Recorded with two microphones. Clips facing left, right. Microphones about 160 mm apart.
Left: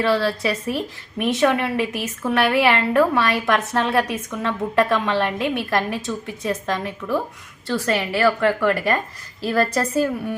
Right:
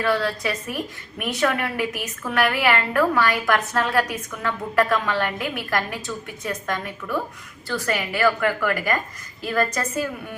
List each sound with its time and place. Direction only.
0.0 s a woman's voice: 30° left (ahead or behind)